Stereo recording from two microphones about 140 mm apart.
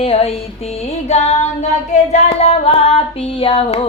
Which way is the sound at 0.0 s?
45° left (ahead or behind).